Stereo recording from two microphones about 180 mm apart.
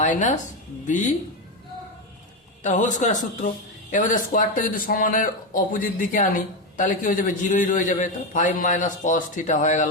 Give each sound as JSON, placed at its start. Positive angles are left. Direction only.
{"t": 0.0, "sound": "speech", "side_deg": 45}
{"t": 2.6, "sound": "speech", "side_deg": 45}